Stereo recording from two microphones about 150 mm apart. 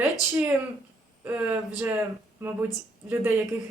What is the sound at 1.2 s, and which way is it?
Speech, 10° right (ahead or behind).